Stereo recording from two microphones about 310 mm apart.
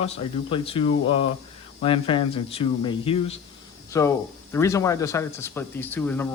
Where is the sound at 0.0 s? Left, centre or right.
Centre.